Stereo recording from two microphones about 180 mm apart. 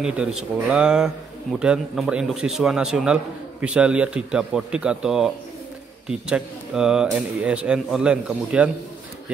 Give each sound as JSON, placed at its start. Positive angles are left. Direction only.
{"t": 0.0, "sound": "speech", "side_deg": -5}